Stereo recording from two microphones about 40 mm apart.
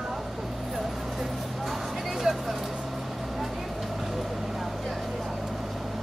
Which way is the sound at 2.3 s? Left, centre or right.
Right.